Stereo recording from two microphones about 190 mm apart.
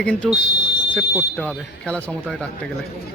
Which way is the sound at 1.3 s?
5° left (ahead or behind).